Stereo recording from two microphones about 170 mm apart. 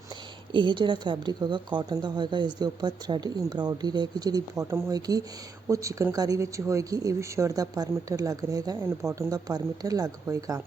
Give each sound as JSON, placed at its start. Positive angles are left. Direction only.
{"t": 0.5, "sound": "speech", "side_deg": -30}